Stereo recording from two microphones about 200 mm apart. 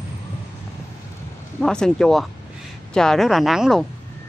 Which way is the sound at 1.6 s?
5° left (ahead or behind).